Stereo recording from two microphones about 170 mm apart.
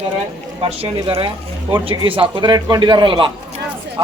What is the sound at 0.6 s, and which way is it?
A man's voice, 35° right (ahead or behind).